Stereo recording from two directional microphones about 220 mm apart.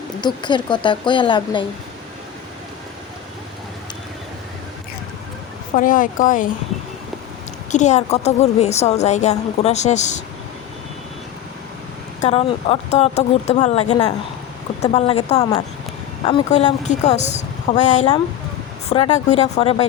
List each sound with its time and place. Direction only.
0.2 s speech: 20° left (ahead or behind)
5.7 s a woman's voice: 40° left (ahead or behind)
7.7 s a woman's voice: 30° left (ahead or behind)
12.2 s speech: 25° left (ahead or behind)
15.4 s a woman's voice: 20° left (ahead or behind)